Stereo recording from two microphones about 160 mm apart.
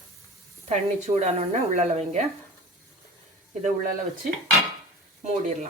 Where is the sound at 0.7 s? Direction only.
45° right (ahead or behind).